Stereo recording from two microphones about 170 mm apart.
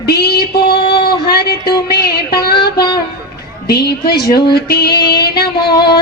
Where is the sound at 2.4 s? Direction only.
65° left (ahead or behind).